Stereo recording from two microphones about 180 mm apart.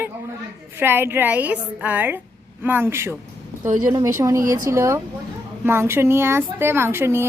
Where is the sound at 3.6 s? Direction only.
45° right (ahead or behind).